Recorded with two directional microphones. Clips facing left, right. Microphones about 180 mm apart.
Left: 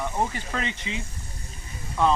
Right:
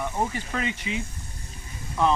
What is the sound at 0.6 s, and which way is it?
Speech, 10° right (ahead or behind).